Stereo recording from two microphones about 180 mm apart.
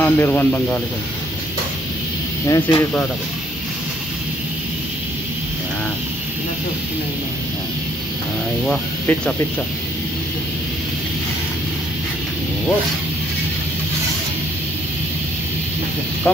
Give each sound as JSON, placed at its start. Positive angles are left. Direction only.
{"t": 0.0, "sound": "a man's voice", "side_deg": 10}
{"t": 2.4, "sound": "speech", "side_deg": 20}
{"t": 8.6, "sound": "speech", "side_deg": 5}